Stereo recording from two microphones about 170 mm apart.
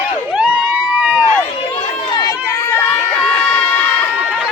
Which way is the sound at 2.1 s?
25° left (ahead or behind).